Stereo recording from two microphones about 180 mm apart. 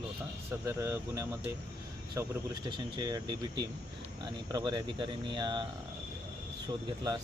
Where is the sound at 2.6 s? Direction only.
25° right (ahead or behind).